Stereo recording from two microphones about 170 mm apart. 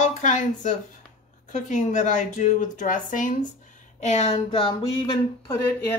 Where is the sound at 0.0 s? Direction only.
45° left (ahead or behind).